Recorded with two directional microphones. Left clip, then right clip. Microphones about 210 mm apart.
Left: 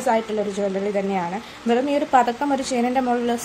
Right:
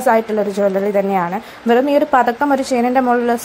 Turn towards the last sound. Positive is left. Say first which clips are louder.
# right 7 dB
turn(degrees=-20)  # may be behind; listen again after turning